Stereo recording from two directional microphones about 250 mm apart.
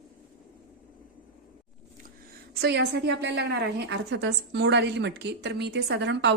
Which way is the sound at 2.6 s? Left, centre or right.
Right.